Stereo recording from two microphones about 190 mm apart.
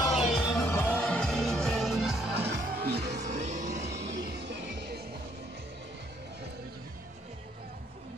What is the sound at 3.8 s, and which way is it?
Music, 65° right (ahead or behind).